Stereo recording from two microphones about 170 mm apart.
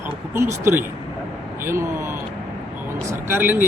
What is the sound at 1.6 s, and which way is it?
Speech, 15° right (ahead or behind).